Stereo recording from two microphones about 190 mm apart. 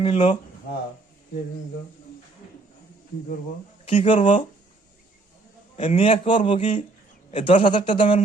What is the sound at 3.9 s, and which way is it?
Speech, 35° left (ahead or behind).